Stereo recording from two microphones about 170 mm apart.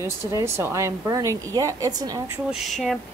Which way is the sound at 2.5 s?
Centre (ahead or behind).